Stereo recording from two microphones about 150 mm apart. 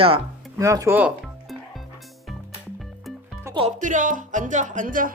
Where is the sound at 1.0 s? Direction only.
5° right (ahead or behind).